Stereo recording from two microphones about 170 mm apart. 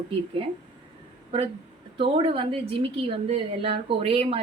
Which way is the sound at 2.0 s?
30° right (ahead or behind).